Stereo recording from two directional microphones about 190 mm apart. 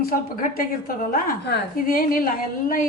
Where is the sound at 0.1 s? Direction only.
50° left (ahead or behind).